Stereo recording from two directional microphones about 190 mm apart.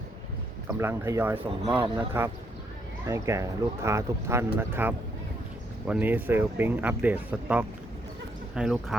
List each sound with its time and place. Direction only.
0.8 s speech: 15° right (ahead or behind)